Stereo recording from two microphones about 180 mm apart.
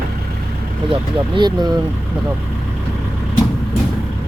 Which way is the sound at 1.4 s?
25° right (ahead or behind).